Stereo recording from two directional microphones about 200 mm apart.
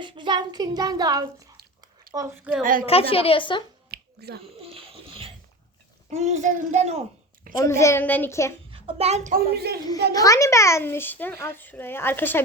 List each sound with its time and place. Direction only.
0.0 s a child's voice: 25° right (ahead or behind); by 2.6 s 5° right (ahead or behind)
2.8 s a woman's voice: 30° left (ahead or behind)
3.9 s finger snapping: 55° right (ahead or behind)
4.6 s a sound: 30° right (ahead or behind)
6.1 s speech: 35° right (ahead or behind)
7.5 s a child's voice: 15° left (ahead or behind)
8.7 s a child's voice: 30° right (ahead or behind)
9.3 s a woman's voice: 50° right (ahead or behind)
10.1 s a child's voice: 15° left (ahead or behind)